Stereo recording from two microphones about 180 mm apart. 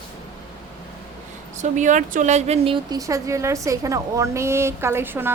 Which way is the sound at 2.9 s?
20° right (ahead or behind).